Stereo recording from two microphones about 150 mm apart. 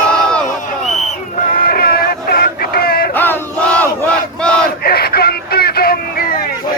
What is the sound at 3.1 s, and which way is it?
Battle cry, 10° left (ahead or behind).